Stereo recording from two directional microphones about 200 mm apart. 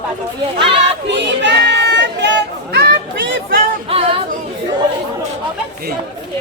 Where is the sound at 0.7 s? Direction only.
60° right (ahead or behind).